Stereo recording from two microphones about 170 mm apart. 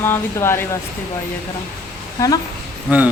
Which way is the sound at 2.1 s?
20° left (ahead or behind).